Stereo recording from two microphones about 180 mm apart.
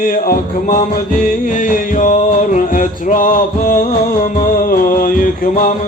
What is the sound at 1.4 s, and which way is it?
Music, 50° left (ahead or behind).